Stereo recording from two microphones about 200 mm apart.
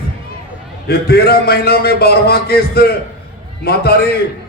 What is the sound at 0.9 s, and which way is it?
A man's voice, 50° left (ahead or behind).